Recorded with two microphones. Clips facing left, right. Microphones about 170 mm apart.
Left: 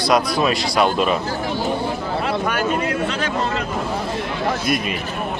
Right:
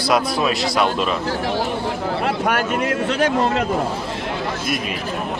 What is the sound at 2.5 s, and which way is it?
Speech, 75° right (ahead or behind).